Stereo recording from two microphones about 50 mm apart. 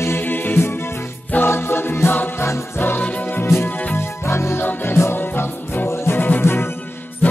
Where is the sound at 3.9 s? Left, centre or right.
Left.